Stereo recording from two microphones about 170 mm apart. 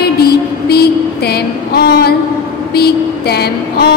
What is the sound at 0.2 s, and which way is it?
Music, 70° left (ahead or behind).